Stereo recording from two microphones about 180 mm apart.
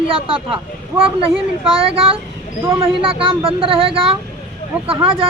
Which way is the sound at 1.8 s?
30° right (ahead or behind).